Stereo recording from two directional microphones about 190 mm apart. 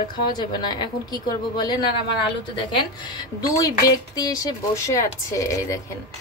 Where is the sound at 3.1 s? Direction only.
20° left (ahead or behind).